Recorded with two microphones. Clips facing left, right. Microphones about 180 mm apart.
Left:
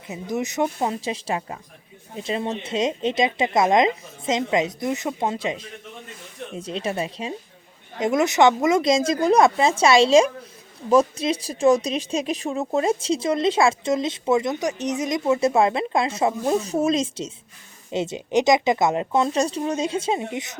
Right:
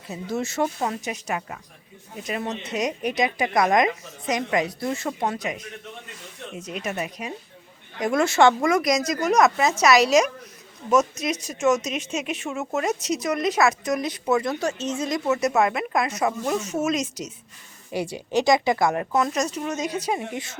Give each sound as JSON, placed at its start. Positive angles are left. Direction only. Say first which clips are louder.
{"t": 0.1, "sound": "speech", "louder": "left 1 dB", "side_deg": 15}
{"t": 1.0, "sound": "speech", "louder": "left 3 dB", "side_deg": 30}